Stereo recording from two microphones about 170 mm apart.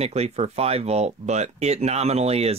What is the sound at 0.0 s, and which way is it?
Speech, 40° right (ahead or behind).